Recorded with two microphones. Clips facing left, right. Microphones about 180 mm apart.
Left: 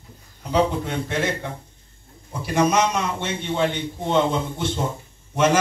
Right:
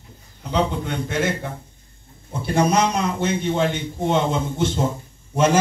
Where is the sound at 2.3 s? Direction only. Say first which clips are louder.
Right 1 dB; 30° right (ahead or behind); by 4.7 s 45° right (ahead or behind).